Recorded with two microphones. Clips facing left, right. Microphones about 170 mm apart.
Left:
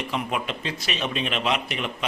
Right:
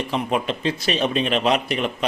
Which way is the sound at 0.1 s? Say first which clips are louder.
Right 6 dB; 35° right (ahead or behind).